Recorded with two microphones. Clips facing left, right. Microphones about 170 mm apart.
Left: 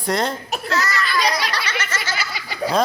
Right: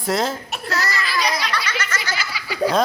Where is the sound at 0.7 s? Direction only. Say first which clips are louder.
Left 2 dB; 35° right (ahead or behind).